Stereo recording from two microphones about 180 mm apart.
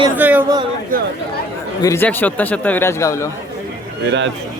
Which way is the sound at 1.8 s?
15° left (ahead or behind).